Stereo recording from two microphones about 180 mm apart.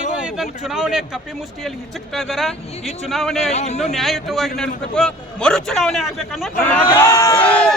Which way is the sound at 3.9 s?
Centre (ahead or behind).